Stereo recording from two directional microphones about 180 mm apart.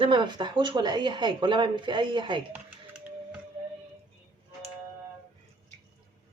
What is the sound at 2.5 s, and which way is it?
Music, 10° right (ahead or behind).